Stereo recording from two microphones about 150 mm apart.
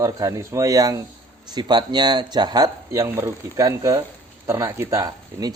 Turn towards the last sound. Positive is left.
turn(degrees=-25)  # may be behind; listen again after turning